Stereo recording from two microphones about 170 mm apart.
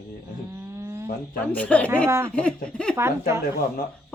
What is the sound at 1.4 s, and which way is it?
A woman's voice, 10° left (ahead or behind).